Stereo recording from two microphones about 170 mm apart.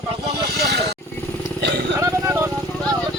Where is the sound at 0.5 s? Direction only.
70° right (ahead or behind).